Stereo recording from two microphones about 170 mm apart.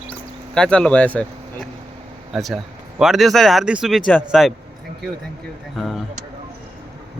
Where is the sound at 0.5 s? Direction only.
5° left (ahead or behind).